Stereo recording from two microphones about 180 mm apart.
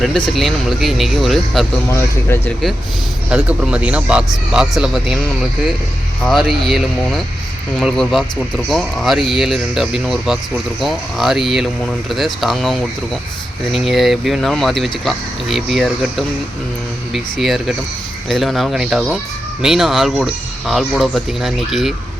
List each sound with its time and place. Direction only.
0.0 s speech: centre (ahead or behind)
1.9 s speech: 15° left (ahead or behind)
3.2 s speech: 5° right (ahead or behind)
6.2 s speech: centre (ahead or behind)